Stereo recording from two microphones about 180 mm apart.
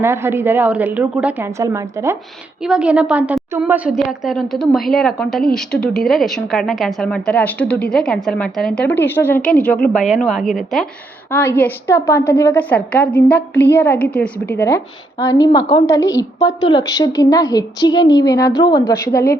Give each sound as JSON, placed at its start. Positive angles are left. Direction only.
{"t": 0.0, "sound": "a woman's voice", "side_deg": -15}
{"t": 11.3, "sound": "a woman's voice", "side_deg": 10}